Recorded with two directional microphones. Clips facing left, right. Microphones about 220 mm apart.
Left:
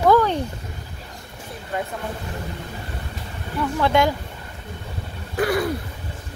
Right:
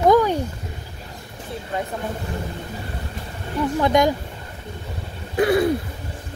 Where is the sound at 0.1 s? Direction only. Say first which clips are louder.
Even; 10° right (ahead or behind).